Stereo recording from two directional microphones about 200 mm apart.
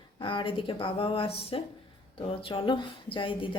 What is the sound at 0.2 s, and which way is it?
A woman's voice, 25° left (ahead or behind).